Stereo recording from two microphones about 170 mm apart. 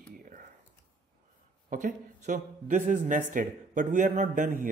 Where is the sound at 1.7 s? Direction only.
45° right (ahead or behind).